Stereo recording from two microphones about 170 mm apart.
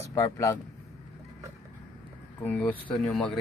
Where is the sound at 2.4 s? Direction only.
10° left (ahead or behind).